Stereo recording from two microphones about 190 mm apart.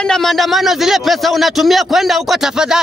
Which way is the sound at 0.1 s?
Centre (ahead or behind).